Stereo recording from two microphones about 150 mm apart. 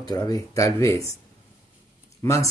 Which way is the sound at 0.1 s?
25° left (ahead or behind).